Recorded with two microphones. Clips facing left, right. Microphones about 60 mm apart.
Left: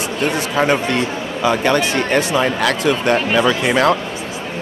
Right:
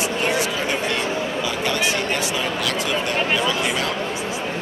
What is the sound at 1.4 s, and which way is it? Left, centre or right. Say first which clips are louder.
Speech: left 11 dB; left.